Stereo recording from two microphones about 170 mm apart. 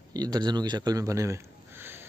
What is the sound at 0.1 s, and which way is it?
A man's voice, 25° right (ahead or behind).